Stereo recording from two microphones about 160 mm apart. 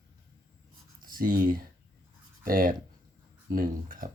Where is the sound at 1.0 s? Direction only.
60° right (ahead or behind).